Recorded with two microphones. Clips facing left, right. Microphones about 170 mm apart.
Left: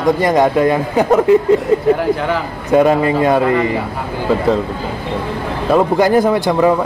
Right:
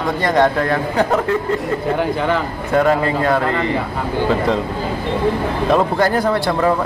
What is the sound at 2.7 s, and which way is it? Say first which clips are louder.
Speech: left 4 dB; 15° left (ahead or behind).